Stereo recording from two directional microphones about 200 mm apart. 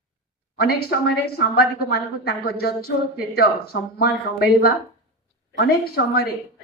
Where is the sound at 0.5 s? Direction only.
50° left (ahead or behind).